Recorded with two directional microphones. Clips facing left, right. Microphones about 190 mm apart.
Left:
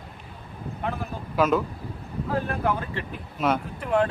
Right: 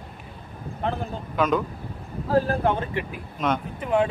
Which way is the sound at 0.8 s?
30° right (ahead or behind).